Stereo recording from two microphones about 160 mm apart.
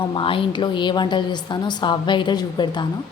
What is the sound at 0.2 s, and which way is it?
A woman's voice, 35° left (ahead or behind).